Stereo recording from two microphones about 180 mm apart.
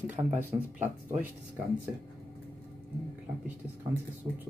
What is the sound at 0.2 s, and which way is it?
Speech, 30° right (ahead or behind).